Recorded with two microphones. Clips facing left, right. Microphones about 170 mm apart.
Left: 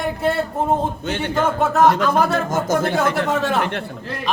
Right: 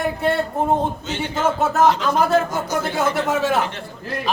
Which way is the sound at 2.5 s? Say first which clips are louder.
Left 4 dB; 50° left (ahead or behind).